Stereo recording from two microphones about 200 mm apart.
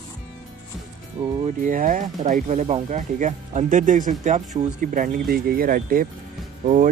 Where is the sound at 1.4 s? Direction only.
40° right (ahead or behind).